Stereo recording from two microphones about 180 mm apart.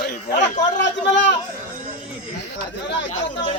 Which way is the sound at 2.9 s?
85° left.